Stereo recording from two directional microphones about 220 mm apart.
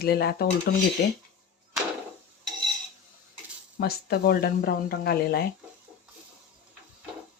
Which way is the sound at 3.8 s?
45° left (ahead or behind).